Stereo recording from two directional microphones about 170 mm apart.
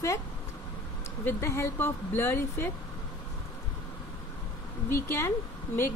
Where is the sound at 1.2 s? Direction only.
15° left (ahead or behind).